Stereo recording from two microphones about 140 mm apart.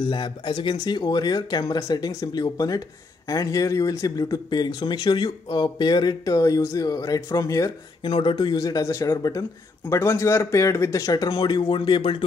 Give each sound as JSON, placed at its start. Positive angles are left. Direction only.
{"t": 0.0, "sound": "speech", "side_deg": 35}
{"t": 8.1, "sound": "speech", "side_deg": 35}